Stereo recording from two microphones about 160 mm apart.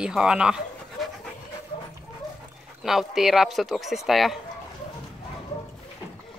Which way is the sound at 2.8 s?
Centre (ahead or behind).